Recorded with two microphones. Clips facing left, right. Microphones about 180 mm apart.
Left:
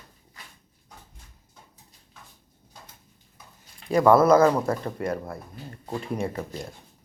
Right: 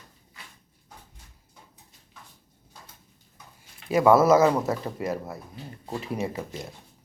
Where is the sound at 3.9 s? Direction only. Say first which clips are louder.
Left 1 dB; 5° right (ahead or behind).